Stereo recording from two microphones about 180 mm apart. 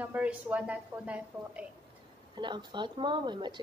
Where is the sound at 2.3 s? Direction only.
25° right (ahead or behind).